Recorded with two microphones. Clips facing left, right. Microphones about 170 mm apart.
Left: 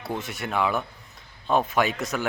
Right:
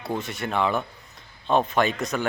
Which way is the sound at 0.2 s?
Centre (ahead or behind).